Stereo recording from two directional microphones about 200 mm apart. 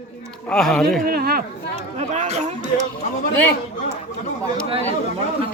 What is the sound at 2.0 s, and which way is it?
Speech, 35° right (ahead or behind).